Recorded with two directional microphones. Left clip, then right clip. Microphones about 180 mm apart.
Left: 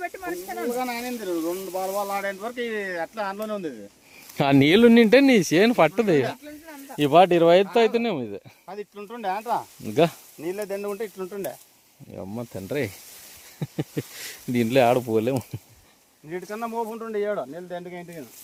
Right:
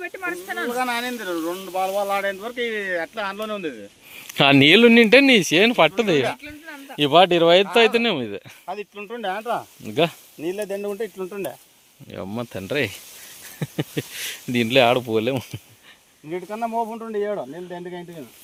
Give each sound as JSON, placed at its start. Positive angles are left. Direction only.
{"t": 0.0, "sound": "speech", "side_deg": 35}
{"t": 0.6, "sound": "speech", "side_deg": -25}
{"t": 2.0, "sound": "speech", "side_deg": 25}
{"t": 8.6, "sound": "speech", "side_deg": -35}
{"t": 9.8, "sound": "speech", "side_deg": 25}
{"t": 10.4, "sound": "sizzle", "side_deg": -60}
{"t": 12.4, "sound": "speech", "side_deg": 0}
{"t": 16.3, "sound": "speech", "side_deg": -50}